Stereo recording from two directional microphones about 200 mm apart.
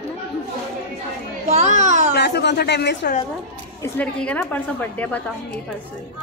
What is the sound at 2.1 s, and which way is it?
Speech, 55° left (ahead or behind).